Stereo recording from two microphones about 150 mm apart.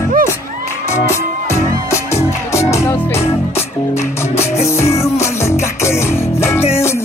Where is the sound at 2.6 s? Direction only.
45° left (ahead or behind).